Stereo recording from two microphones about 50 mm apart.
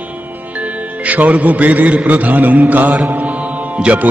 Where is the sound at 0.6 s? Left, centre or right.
Right.